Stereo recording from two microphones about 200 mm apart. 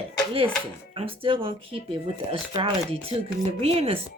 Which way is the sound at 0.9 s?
25° right (ahead or behind).